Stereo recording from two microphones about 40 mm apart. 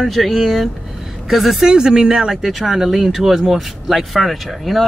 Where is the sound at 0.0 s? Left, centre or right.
Centre.